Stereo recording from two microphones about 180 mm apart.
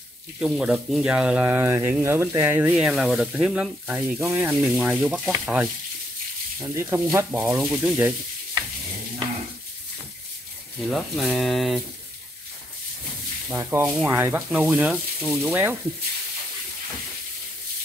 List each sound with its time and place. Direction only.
0.4 s speech: 5° right (ahead or behind)
6.7 s speech: 15° right (ahead or behind)
10.9 s speech: centre (ahead or behind)
13.5 s speech: 10° right (ahead or behind)